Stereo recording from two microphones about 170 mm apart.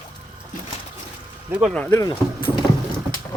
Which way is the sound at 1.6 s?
5° left (ahead or behind).